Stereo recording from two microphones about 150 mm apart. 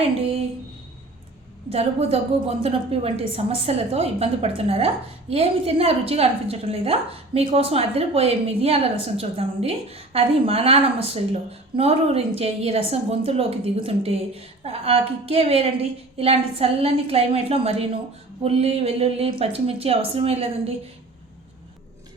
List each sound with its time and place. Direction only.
1.7 s a woman's voice: 40° right (ahead or behind)